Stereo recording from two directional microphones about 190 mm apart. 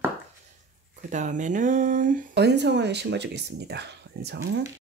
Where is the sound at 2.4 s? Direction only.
65° right (ahead or behind).